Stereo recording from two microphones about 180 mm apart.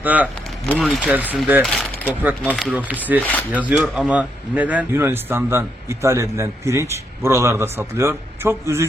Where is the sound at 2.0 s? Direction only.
10° right (ahead or behind).